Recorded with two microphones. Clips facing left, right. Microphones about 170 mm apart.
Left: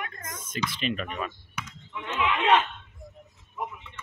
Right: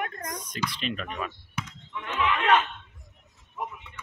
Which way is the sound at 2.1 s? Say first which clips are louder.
Even; 15° left (ahead or behind).